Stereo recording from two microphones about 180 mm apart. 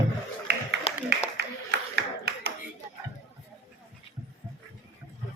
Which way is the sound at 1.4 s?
65° right (ahead or behind).